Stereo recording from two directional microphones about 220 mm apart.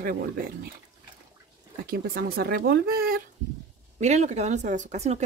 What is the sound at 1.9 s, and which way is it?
Speech, 45° right (ahead or behind).